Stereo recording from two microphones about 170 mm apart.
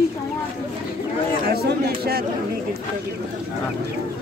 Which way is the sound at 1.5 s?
65° right (ahead or behind).